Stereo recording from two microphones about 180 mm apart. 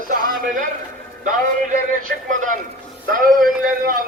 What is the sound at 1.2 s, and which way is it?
A man's voice, 50° right (ahead or behind).